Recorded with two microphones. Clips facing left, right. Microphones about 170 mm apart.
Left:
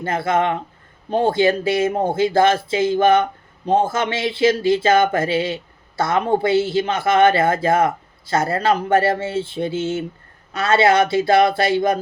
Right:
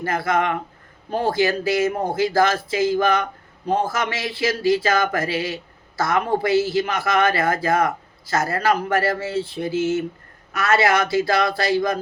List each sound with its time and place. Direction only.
0.0 s speech: 25° left (ahead or behind)